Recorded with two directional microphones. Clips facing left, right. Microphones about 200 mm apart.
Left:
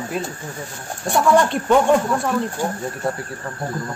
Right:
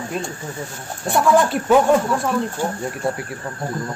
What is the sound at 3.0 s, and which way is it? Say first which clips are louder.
Speech: right 2 dB; 10° right (ahead or behind).